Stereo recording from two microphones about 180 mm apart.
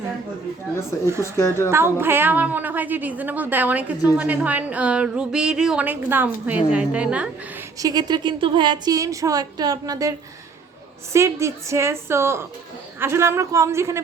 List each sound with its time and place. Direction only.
1.4 s a woman's voice: 15° left (ahead or behind)
1.7 s a woman's voice: 15° right (ahead or behind)
7.8 s a woman's voice: 20° right (ahead or behind)